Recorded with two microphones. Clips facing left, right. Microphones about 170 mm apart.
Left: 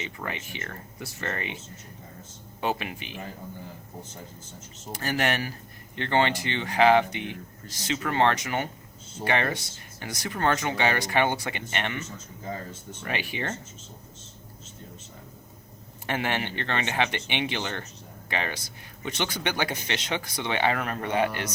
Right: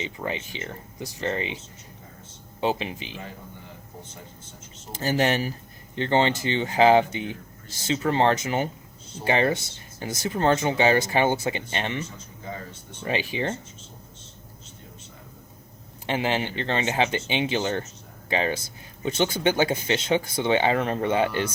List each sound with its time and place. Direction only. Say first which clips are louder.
0.0 s speech: right 4 dB; 25° right (ahead or behind)
2.6 s speech: right 3 dB; 25° right (ahead or behind)
4.9 s speech: right 4 dB; 25° right (ahead or behind)
12.5 s speech: left 1 dB; 40° left (ahead or behind)
13.1 s speech: right 5 dB; 25° right (ahead or behind)
16.0 s speech: right 3 dB; 20° right (ahead or behind)